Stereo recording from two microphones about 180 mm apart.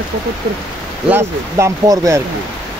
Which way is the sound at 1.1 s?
15° right (ahead or behind).